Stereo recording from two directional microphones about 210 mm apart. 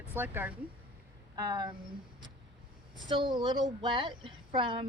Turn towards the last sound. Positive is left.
turn(degrees=-25)  # may be behind; listen again after turning